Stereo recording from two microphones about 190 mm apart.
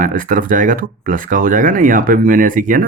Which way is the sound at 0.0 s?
45° right (ahead or behind).